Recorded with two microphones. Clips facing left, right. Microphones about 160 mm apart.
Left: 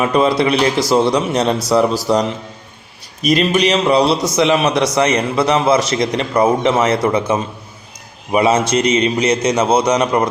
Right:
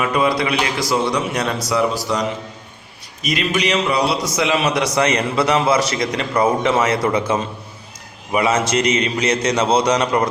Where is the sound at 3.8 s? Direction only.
30° left (ahead or behind).